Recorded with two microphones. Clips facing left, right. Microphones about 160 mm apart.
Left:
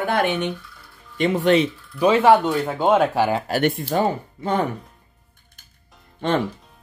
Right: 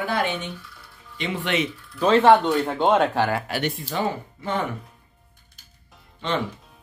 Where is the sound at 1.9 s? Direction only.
10° left (ahead or behind).